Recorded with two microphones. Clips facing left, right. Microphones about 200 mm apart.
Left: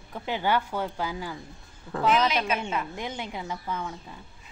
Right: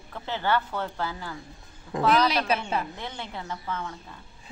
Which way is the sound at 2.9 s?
15° left (ahead or behind).